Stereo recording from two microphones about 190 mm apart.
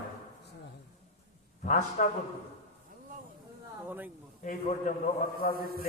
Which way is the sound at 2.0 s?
40° left (ahead or behind).